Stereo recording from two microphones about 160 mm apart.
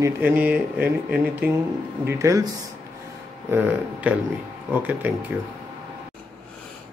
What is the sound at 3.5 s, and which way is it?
Speech, 10° right (ahead or behind).